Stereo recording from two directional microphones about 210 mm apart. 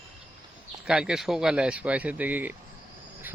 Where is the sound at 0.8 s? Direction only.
5° right (ahead or behind).